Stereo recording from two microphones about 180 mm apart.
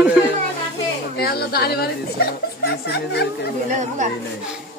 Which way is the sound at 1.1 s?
60° left (ahead or behind).